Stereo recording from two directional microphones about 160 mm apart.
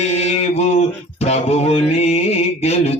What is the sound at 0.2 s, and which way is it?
Mantra, 40° left (ahead or behind).